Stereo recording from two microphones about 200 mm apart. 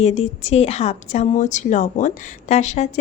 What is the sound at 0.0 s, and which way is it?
A woman's voice, 35° left (ahead or behind).